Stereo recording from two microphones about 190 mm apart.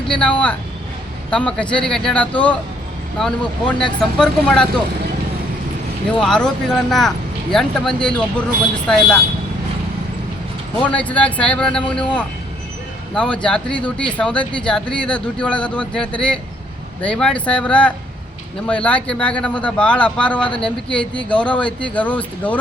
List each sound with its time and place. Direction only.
0.1 s speech: 5° left (ahead or behind)
6.1 s speech: 5° left (ahead or behind)
10.8 s speech: 5° left (ahead or behind)
13.1 s speech: 5° left (ahead or behind)